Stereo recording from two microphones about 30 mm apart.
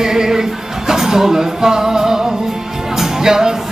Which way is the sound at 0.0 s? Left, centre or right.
Centre.